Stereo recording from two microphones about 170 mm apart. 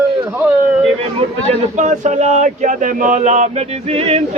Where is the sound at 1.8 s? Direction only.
45° right (ahead or behind).